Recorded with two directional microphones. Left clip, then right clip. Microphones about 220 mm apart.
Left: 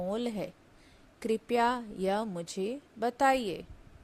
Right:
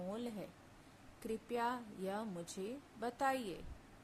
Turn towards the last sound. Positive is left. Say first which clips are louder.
# left 11 dB
turn(degrees=30)  # may be behind; listen again after turning